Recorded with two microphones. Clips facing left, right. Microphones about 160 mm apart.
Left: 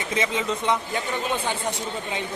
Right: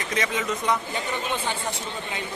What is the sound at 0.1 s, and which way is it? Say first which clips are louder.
Speech: left 2 dB; 25° left (ahead or behind).